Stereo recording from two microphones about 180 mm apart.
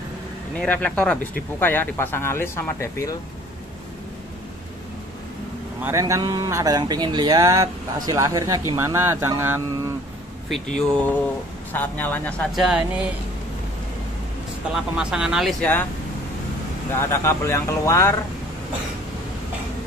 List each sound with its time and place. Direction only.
0.6 s speech: 10° left (ahead or behind)
5.8 s speech: 15° right (ahead or behind)
10.5 s speech: 5° left (ahead or behind)
15.0 s speech: 5° right (ahead or behind)
16.9 s speech: 15° left (ahead or behind)